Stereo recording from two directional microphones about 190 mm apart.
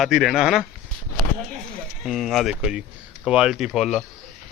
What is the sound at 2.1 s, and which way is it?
A man's voice, centre (ahead or behind).